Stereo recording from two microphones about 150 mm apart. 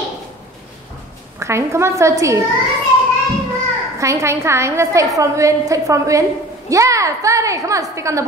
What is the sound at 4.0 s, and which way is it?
A woman's voice, 20° right (ahead or behind).